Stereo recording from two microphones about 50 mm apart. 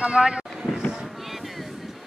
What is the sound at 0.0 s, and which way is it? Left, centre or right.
Speech, centre.